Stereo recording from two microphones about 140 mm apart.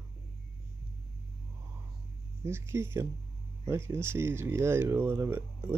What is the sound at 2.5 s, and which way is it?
Speech, 15° right (ahead or behind).